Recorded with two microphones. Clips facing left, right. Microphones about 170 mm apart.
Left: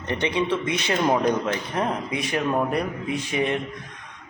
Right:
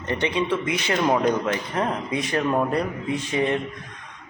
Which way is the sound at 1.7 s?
15° left (ahead or behind).